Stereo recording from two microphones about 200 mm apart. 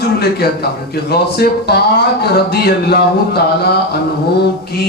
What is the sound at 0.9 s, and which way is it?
Speech, 50° left (ahead or behind).